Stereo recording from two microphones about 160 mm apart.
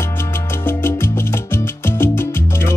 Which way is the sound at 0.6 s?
15° left (ahead or behind).